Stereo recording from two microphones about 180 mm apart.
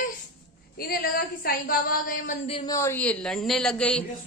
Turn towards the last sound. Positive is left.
turn(degrees=5)  # may be behind; listen again after turning